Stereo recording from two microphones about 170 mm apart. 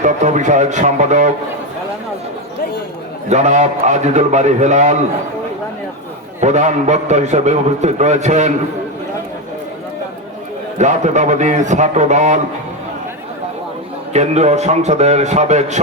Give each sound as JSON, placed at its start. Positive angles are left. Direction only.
{"t": 0.0, "sound": "a man's voice", "side_deg": -45}
{"t": 3.2, "sound": "a man's voice", "side_deg": -40}
{"t": 6.4, "sound": "a man's voice", "side_deg": -45}
{"t": 10.8, "sound": "a man's voice", "side_deg": -45}
{"t": 14.1, "sound": "a man's voice", "side_deg": -40}